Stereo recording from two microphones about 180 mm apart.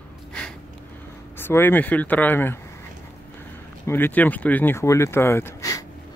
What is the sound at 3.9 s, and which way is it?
Speech, 10° left (ahead or behind).